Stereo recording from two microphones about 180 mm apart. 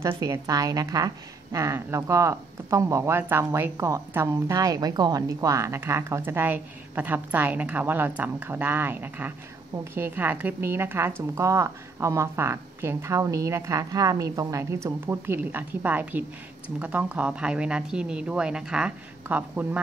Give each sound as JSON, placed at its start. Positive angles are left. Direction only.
{"t": 0.0, "sound": "a woman's voice", "side_deg": -20}